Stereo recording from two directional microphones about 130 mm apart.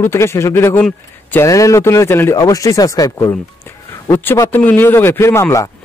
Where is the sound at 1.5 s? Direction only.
25° left (ahead or behind).